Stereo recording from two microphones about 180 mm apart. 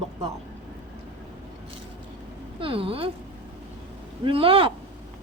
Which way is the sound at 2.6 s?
30° right (ahead or behind).